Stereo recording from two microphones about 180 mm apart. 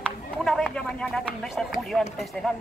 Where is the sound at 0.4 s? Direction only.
Centre (ahead or behind).